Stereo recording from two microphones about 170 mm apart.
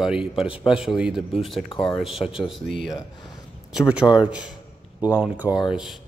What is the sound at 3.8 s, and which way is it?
Speech, 5° right (ahead or behind).